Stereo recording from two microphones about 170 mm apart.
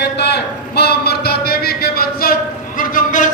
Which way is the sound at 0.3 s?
70° left (ahead or behind).